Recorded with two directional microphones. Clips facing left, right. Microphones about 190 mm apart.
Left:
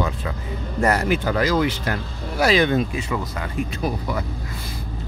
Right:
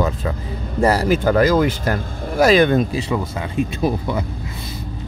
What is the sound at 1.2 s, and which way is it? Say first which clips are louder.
Speech: right 7 dB; 50° right (ahead or behind).